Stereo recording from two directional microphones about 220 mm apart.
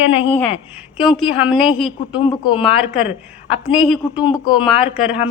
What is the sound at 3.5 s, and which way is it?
Speech, 25° left (ahead or behind).